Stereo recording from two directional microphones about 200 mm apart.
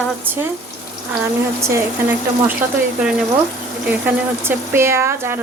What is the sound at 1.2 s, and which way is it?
Speech, 10° right (ahead or behind).